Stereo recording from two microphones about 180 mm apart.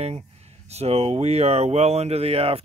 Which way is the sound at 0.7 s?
35° right (ahead or behind).